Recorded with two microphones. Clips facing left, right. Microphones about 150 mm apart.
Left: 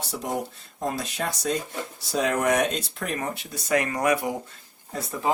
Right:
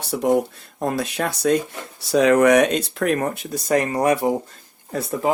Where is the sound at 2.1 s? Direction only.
85° right; by 3.4 s 60° right (ahead or behind).